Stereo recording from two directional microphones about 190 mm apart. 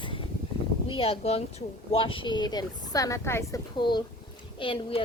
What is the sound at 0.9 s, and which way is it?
A woman's voice, 25° left (ahead or behind).